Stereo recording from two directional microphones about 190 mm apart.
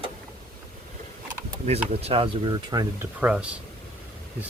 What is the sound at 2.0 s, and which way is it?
Speech, 30° right (ahead or behind).